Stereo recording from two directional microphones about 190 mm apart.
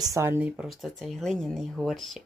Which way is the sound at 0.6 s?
Centre (ahead or behind).